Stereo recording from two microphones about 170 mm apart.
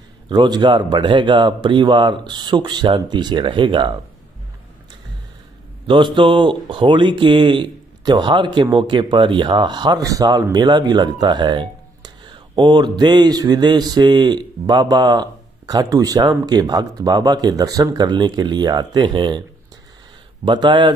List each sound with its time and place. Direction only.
0.3 s speech: 25° right (ahead or behind)
5.9 s speech: 30° right (ahead or behind)
20.4 s speech: 25° right (ahead or behind)